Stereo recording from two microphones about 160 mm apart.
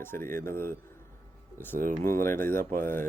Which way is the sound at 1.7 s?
55° right (ahead or behind).